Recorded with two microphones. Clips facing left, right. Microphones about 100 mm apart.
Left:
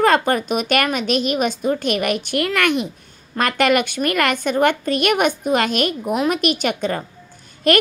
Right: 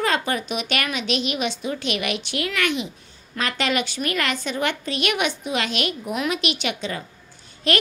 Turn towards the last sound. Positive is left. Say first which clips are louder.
# left 7 dB
turn(degrees=50)  # may be behind; listen again after turning